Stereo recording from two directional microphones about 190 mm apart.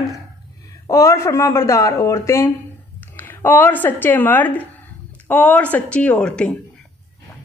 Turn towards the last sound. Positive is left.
turn(degrees=5)  # may be behind; listen again after turning